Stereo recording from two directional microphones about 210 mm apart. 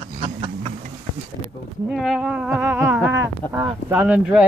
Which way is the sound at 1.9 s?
Centre (ahead or behind).